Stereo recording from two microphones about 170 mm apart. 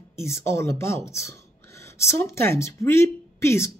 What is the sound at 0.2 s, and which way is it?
A woman's voice, 15° left (ahead or behind).